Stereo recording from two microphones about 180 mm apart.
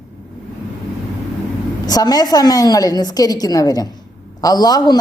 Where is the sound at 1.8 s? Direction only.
20° left (ahead or behind).